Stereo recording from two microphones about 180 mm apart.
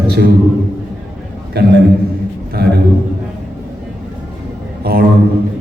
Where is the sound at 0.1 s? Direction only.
65° right (ahead or behind).